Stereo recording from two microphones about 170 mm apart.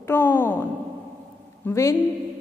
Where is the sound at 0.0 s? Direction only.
10° left (ahead or behind).